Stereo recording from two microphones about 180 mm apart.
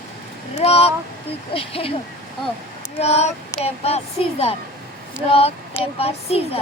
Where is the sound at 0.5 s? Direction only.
35° left (ahead or behind).